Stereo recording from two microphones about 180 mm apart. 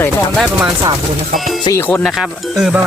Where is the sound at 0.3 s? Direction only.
5° right (ahead or behind).